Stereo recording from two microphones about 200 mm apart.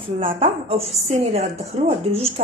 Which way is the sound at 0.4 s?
30° right (ahead or behind).